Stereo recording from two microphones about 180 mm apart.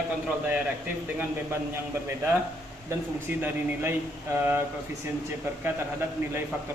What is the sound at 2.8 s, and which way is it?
A man's voice, 10° right (ahead or behind).